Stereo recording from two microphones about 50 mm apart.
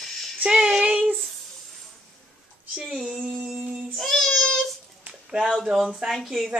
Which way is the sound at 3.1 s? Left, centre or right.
Centre.